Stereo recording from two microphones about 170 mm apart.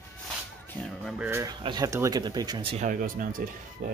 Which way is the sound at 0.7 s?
5° left (ahead or behind).